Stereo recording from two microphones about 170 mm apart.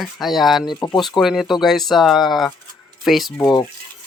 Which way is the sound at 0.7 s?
25° left (ahead or behind).